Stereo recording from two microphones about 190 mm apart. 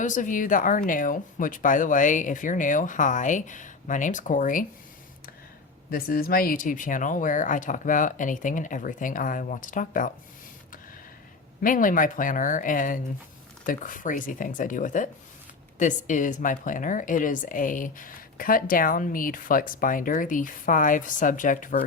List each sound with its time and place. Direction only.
0.0 s speech: 40° left (ahead or behind)
5.9 s speech: 50° left (ahead or behind)
11.6 s speech: 45° left (ahead or behind)